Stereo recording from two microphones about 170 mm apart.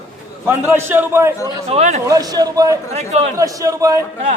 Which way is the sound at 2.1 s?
20° right (ahead or behind).